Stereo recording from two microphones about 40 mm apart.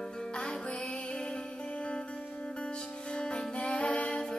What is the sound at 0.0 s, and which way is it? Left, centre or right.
Music, centre.